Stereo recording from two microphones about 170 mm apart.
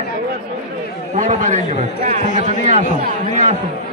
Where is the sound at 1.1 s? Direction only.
50° right (ahead or behind).